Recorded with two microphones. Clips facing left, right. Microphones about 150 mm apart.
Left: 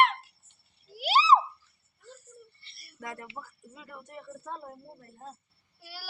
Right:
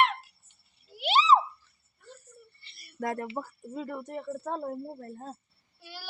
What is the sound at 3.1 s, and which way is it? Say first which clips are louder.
Speech: right 8 dB; 45° right (ahead or behind).